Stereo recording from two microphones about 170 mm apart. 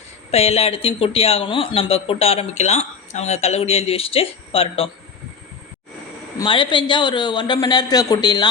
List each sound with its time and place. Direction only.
0.3 s speech: 35° left (ahead or behind)
6.4 s a man's voice: 30° left (ahead or behind)